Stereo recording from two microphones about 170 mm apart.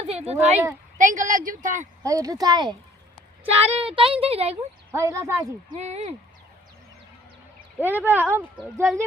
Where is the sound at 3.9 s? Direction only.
30° right (ahead or behind).